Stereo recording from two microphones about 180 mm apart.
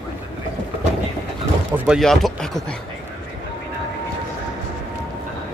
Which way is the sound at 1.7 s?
10° right (ahead or behind).